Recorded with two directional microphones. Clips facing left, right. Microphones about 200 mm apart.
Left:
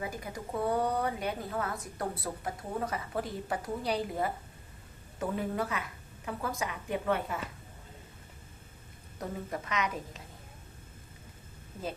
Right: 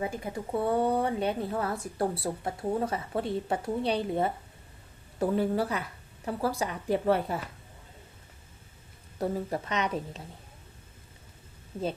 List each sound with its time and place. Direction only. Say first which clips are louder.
0.0 s speech: right 5 dB; 25° right (ahead or behind)
9.1 s speech: right 7 dB; 30° right (ahead or behind)